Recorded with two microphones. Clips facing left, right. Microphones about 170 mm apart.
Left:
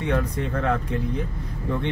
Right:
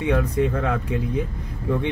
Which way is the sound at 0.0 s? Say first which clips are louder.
Right 4 dB; 10° right (ahead or behind).